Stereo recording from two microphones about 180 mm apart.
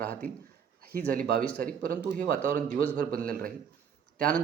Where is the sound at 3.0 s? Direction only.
55° right (ahead or behind).